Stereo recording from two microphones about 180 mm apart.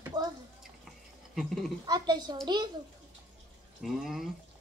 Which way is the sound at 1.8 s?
25° right (ahead or behind).